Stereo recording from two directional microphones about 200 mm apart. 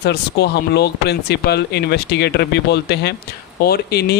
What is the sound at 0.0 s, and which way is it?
Speech, 55° left (ahead or behind).